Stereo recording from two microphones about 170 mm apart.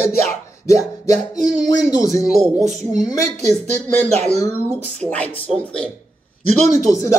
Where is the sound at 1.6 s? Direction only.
20° left (ahead or behind).